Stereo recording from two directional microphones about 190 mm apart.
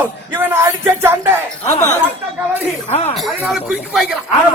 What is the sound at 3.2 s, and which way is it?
Speech, centre (ahead or behind).